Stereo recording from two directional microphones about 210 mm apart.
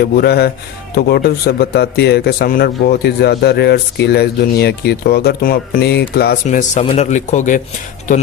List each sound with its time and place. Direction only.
0.0 s a man's voice: 50° left (ahead or behind)